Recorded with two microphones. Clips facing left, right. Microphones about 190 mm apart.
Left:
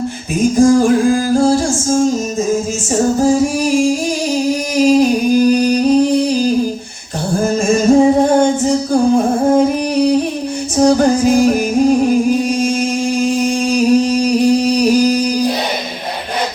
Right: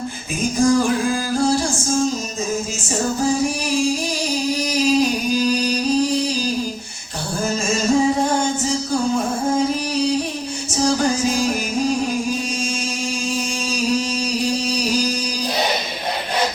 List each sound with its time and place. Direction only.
0.5 s music: 45° left (ahead or behind)
3.2 s music: 45° left (ahead or behind)
5.3 s music: 55° left (ahead or behind)
7.4 s music: 55° left (ahead or behind)
10.8 s music: 55° left (ahead or behind)